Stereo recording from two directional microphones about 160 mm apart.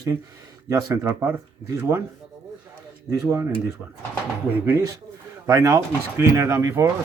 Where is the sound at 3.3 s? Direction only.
15° right (ahead or behind).